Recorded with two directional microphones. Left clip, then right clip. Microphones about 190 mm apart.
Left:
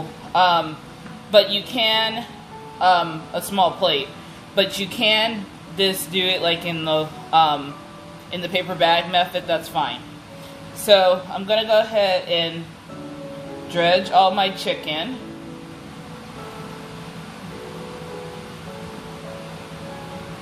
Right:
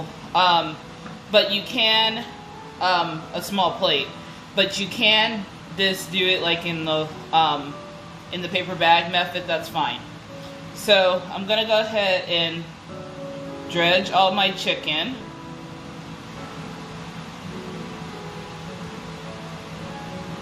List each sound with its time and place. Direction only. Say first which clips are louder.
0.3 s speech: left 1 dB; 40° left (ahead or behind)
13.7 s speech: left 2 dB; 40° left (ahead or behind)